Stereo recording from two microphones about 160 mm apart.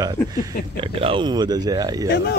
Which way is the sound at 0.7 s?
30° right (ahead or behind).